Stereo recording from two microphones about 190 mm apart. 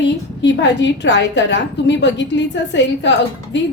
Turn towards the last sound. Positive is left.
turn(degrees=70)  # may be behind; listen again after turning